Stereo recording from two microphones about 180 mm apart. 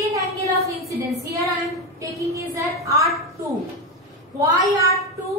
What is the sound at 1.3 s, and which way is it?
Child singing, 15° right (ahead or behind).